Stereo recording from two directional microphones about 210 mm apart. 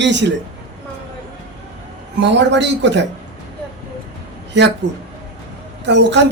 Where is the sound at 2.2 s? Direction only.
55° right (ahead or behind).